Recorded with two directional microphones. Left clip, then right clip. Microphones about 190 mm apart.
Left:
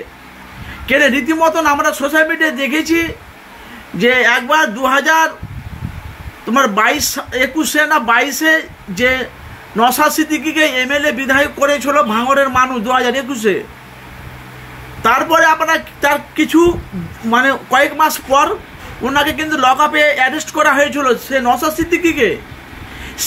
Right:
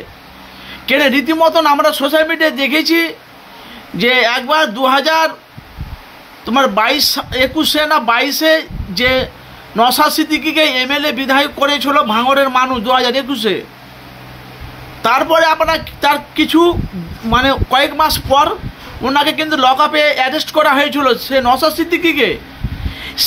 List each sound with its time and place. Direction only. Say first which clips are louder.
0.8 s a man's voice: even; 20° right (ahead or behind)
6.5 s a man's voice: even; 15° right (ahead or behind)
15.0 s a man's voice: even; 20° right (ahead or behind)